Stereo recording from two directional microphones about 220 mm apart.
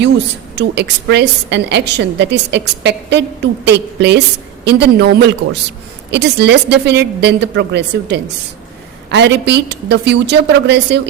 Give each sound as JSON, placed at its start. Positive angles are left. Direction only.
{"t": 0.5, "sound": "a woman's voice", "side_deg": -50}